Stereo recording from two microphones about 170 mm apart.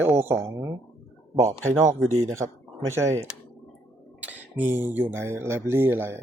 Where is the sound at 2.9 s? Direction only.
15° right (ahead or behind).